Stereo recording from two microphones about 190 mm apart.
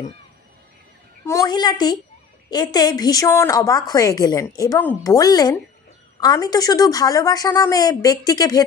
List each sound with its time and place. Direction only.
1.2 s a woman's voice: 15° left (ahead or behind)